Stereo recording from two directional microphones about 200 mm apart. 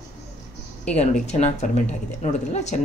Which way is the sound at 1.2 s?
35° left (ahead or behind).